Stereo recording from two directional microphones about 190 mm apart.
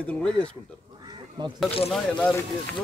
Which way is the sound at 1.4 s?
25° right (ahead or behind).